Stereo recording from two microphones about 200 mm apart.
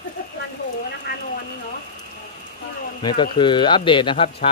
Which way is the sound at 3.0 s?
25° left (ahead or behind).